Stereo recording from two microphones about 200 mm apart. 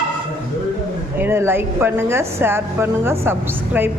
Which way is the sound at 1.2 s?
10° right (ahead or behind).